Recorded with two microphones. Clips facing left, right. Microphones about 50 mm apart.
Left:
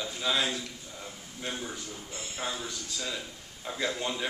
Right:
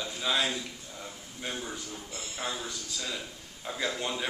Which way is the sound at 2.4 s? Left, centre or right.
Centre.